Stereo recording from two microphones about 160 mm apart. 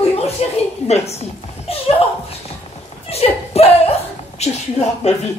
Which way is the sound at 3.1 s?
40° left (ahead or behind).